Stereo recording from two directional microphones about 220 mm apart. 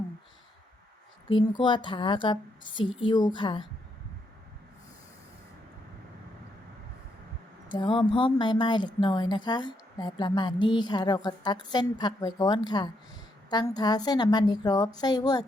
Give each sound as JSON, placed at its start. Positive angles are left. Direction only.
{"t": 1.3, "sound": "a woman's voice", "side_deg": 20}
{"t": 7.7, "sound": "a woman's voice", "side_deg": 20}